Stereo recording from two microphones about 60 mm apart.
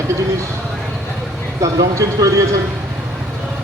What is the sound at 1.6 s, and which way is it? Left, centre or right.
Speech, right.